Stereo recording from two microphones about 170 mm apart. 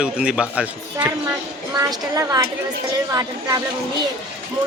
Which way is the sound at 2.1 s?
20° right (ahead or behind).